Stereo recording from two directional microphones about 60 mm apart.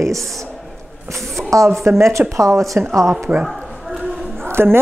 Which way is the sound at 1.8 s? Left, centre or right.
Right.